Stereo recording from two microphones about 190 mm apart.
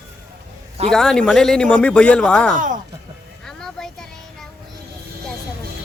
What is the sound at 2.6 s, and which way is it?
Speech, 45° right (ahead or behind).